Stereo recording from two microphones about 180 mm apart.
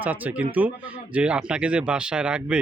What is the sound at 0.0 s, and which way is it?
Speech, 10° right (ahead or behind).